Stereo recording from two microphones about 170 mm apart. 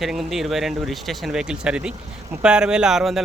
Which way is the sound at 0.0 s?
Centre (ahead or behind).